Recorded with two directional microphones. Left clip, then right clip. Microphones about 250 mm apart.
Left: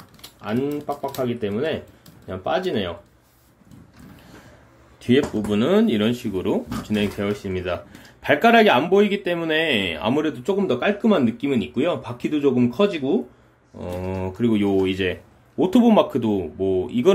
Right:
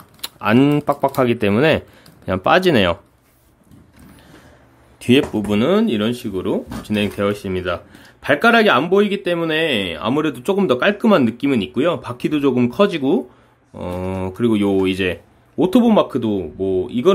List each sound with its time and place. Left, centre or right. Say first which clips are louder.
0.2 s speech: right 10 dB; right
5.0 s speech: right 4 dB; right